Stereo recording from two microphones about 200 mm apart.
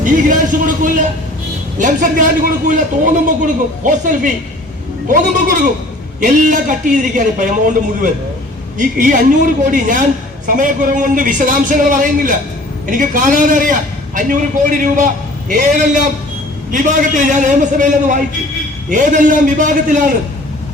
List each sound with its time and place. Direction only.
0.0 s a woman's voice: 40° right (ahead or behind)